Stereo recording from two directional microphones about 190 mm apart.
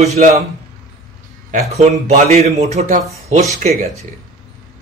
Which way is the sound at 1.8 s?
35° right (ahead or behind).